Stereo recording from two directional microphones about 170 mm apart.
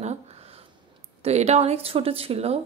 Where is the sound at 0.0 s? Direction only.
40° right (ahead or behind).